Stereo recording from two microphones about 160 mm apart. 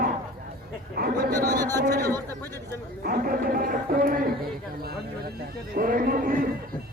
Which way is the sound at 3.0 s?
65° right (ahead or behind).